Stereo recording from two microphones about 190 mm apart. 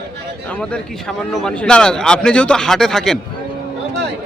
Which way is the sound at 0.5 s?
5° left (ahead or behind).